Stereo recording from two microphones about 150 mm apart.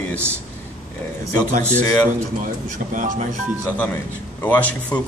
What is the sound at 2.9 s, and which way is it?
Speech, 60° right (ahead or behind).